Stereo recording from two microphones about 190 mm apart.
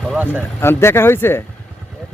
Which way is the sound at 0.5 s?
15° left (ahead or behind).